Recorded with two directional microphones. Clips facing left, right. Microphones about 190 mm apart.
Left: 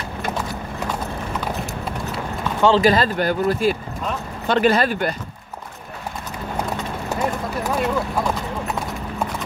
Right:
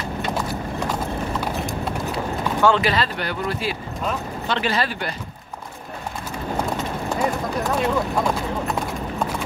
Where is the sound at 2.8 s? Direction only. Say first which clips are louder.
Left 6 dB; 45° left (ahead or behind).